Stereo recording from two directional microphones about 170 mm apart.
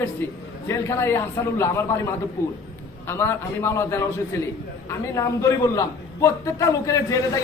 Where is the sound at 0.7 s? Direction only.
15° left (ahead or behind).